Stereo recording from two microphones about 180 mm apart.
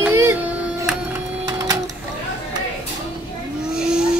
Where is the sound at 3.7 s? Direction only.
5° right (ahead or behind).